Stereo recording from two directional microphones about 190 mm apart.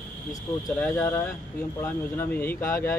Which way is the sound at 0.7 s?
10° left (ahead or behind).